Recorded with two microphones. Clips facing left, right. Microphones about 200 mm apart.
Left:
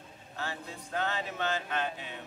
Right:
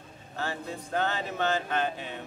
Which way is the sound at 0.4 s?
40° right (ahead or behind).